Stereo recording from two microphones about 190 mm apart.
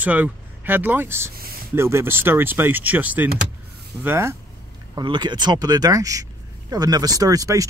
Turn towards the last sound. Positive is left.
turn(degrees=-15)  # may be behind; listen again after turning